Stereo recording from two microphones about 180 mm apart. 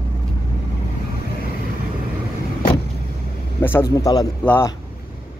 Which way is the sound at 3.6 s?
10° left (ahead or behind).